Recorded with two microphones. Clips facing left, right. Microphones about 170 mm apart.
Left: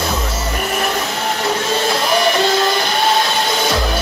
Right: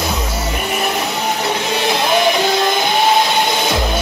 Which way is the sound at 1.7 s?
20° right (ahead or behind).